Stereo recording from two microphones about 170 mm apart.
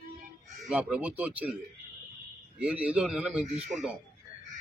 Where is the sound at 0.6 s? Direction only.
5° right (ahead or behind).